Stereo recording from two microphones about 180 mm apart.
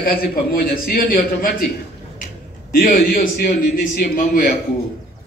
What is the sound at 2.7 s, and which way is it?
A man's voice, 50° left (ahead or behind).